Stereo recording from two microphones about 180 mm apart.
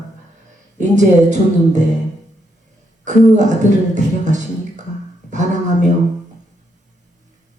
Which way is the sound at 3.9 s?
40° right (ahead or behind).